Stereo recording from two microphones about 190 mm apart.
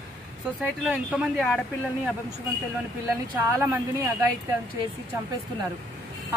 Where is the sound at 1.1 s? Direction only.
Centre (ahead or behind).